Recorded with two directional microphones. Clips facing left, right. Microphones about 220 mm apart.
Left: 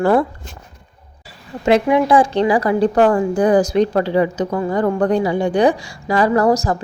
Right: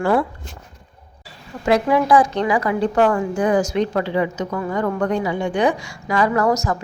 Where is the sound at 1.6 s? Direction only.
20° left (ahead or behind).